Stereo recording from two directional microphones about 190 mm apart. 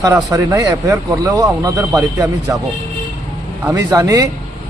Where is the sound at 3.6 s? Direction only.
20° right (ahead or behind).